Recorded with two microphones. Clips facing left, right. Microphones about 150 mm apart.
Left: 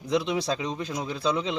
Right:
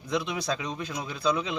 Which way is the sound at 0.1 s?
30° left (ahead or behind).